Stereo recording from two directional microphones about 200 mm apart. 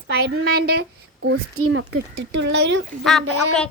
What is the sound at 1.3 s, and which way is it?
A child's voice, 90° right.